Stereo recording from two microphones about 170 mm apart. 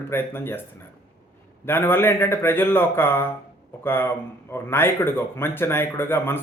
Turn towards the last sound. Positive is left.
turn(degrees=15)  # may be behind; listen again after turning